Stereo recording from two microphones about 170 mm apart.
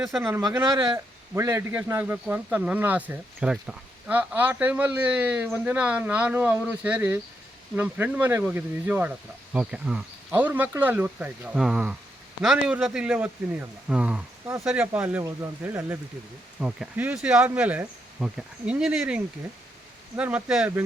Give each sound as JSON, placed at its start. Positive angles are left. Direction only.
{"t": 0.2, "sound": "speech", "side_deg": -15}
{"t": 0.6, "sound": "speech", "side_deg": -25}
{"t": 0.9, "sound": "speech", "side_deg": -15}